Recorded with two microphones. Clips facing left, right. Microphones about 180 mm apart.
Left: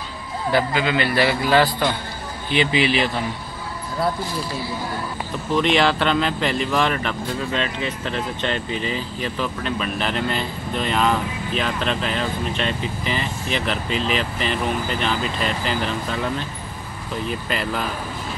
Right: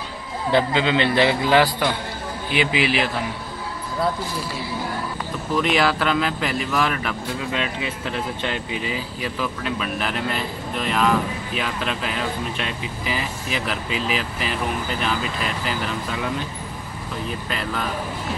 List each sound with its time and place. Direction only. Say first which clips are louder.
0.5 s speech: right 1 dB; 25° right (ahead or behind); by 3.1 s 5° right (ahead or behind)
5.5 s speech: left 2 dB; 5° right (ahead or behind)
17.5 s speech: left 2 dB; centre (ahead or behind)